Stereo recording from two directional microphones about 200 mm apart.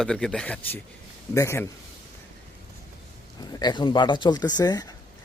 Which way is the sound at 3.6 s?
20° left (ahead or behind).